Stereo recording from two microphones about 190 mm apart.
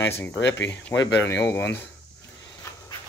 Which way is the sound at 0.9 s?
15° left (ahead or behind).